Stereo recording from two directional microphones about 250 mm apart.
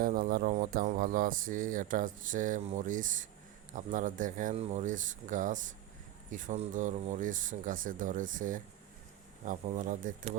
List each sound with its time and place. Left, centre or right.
0.0 s speech: right